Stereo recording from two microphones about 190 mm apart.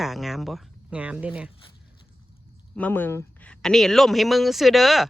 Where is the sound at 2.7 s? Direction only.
10° left (ahead or behind).